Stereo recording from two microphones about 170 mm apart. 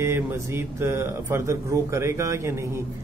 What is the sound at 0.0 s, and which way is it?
A man's voice, 15° right (ahead or behind).